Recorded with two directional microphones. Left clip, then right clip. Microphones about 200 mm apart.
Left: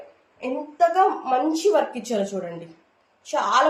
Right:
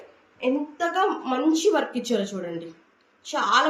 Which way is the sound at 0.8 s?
50° left (ahead or behind).